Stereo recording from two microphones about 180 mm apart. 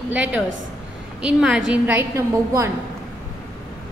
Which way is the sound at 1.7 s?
10° right (ahead or behind).